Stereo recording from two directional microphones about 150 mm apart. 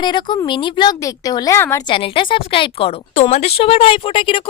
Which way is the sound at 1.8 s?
35° left (ahead or behind).